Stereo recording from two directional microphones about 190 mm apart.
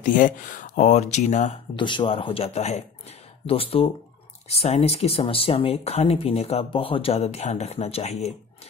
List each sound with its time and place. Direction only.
0.0 s speech: 45° left (ahead or behind)
1.8 s speech: 25° left (ahead or behind)